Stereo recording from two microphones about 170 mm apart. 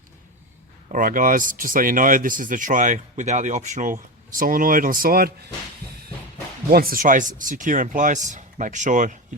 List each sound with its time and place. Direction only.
0.9 s speech: 50° right (ahead or behind)
6.7 s speech: 60° right (ahead or behind)